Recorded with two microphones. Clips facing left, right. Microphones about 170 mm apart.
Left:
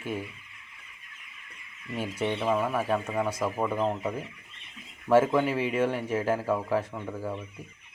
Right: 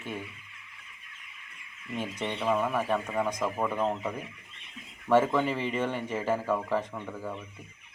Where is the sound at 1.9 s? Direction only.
10° left (ahead or behind).